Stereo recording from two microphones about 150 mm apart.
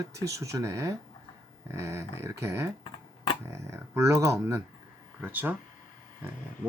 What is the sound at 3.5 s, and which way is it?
Speech, 15° right (ahead or behind).